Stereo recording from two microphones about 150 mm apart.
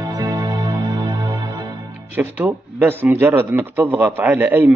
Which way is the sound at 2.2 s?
15° right (ahead or behind).